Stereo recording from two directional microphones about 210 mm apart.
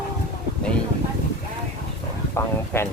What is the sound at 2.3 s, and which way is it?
Speech, 10° left (ahead or behind).